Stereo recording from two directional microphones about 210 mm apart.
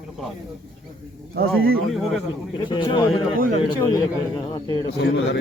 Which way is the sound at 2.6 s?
20° left (ahead or behind).